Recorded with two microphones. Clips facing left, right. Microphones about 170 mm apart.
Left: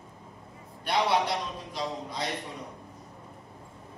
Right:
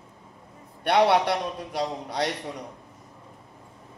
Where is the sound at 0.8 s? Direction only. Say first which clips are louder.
Right 6 dB; 65° right (ahead or behind).